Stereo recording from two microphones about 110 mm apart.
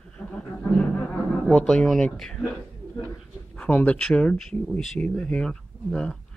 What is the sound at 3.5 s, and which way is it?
Speech, 15° left (ahead or behind).